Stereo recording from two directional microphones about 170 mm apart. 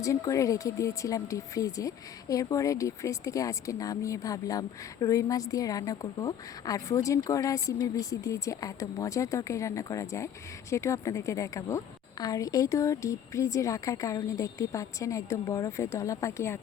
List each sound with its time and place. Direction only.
0.0 s speech: 20° left (ahead or behind)